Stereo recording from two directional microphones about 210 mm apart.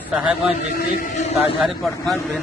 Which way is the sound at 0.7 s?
40° left (ahead or behind).